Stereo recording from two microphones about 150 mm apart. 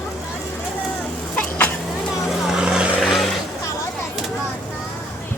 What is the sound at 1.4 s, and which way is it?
Insect, 10° left (ahead or behind).